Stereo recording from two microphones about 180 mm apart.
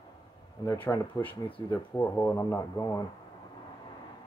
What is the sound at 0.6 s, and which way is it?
Speech, 15° left (ahead or behind).